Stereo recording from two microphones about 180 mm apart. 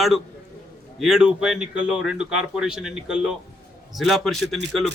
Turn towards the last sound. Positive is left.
turn(degrees=0)  # may be behind; listen again after turning